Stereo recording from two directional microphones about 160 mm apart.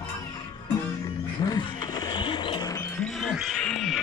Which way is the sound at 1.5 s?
25° left (ahead or behind).